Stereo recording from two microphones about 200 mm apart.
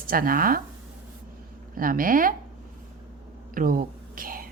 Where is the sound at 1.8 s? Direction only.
45° right (ahead or behind).